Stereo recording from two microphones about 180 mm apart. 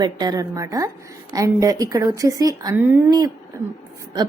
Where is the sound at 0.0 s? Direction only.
20° right (ahead or behind).